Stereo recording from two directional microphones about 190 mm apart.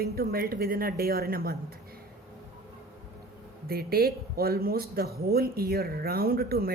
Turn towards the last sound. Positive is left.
turn(degrees=-55)  # may be behind; listen again after turning